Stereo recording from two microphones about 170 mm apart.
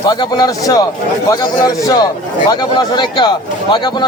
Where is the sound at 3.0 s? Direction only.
25° left (ahead or behind).